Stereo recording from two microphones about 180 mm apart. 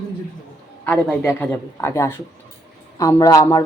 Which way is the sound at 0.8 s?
10° left (ahead or behind).